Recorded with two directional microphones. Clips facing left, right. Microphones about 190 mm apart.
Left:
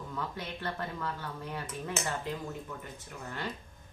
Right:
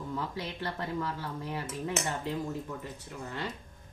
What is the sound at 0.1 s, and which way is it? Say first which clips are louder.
Speech: right 2 dB; 25° right (ahead or behind).